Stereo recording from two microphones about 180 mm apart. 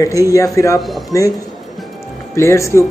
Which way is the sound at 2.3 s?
15° left (ahead or behind).